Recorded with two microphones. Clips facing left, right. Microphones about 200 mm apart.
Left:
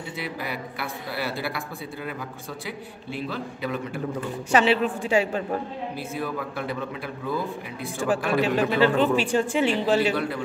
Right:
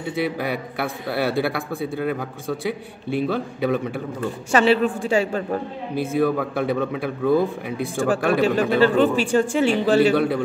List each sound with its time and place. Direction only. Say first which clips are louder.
0.2 s a man's voice: right 8 dB; 60° right (ahead or behind)
3.2 s a man's voice: right 8 dB; 60° right (ahead or behind)
4.5 s speech: right 3 dB; 45° right (ahead or behind)
5.9 s a man's voice: right 12 dB; 60° right (ahead or behind)
8.2 s speech: right 4 dB; 45° right (ahead or behind); by 10.4 s 65° right (ahead or behind)